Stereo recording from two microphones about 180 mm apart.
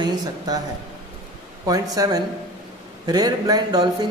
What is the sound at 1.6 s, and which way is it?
A man's voice, 20° right (ahead or behind).